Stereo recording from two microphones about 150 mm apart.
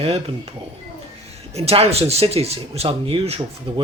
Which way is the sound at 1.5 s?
40° right (ahead or behind).